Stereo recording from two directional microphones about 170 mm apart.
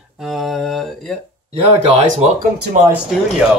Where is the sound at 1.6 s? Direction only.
35° right (ahead or behind).